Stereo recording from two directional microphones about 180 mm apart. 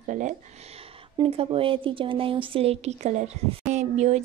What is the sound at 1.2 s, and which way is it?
Speech, 30° right (ahead or behind).